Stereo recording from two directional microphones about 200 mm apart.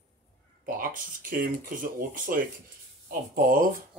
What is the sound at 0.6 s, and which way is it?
Speech, 45° right (ahead or behind).